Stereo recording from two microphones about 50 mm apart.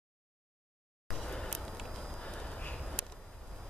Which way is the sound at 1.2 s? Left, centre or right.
Centre.